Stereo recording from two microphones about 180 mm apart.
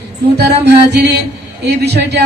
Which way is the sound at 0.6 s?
70° right (ahead or behind).